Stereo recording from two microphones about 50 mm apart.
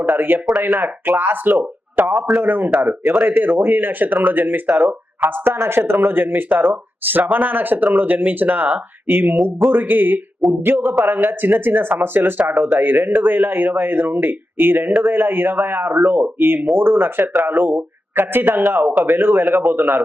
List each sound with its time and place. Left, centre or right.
0.1 s speech: right
4.1 s speech: right
5.5 s speech: right
9.0 s a man's voice: right